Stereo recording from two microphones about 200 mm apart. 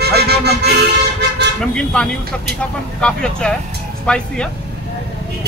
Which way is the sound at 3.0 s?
5° left (ahead or behind).